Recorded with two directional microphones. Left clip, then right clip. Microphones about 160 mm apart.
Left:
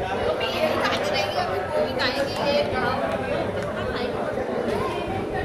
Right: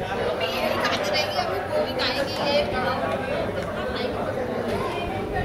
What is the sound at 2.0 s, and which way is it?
Music, 55° left (ahead or behind).